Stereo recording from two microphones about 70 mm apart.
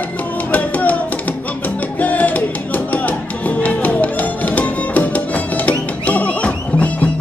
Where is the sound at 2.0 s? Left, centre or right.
Left.